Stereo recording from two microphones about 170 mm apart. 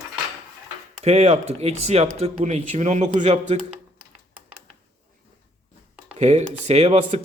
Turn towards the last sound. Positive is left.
turn(degrees=-40)  # may be behind; listen again after turning